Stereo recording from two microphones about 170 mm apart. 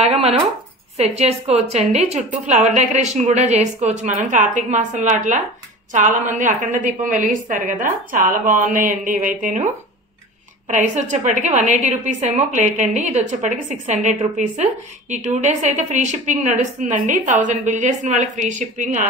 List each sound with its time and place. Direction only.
0.0 s a woman's voice: 35° right (ahead or behind)
10.7 s a woman's voice: 45° right (ahead or behind)